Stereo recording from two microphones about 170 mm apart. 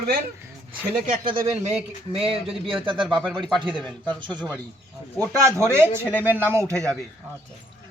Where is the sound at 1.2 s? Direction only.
35° right (ahead or behind).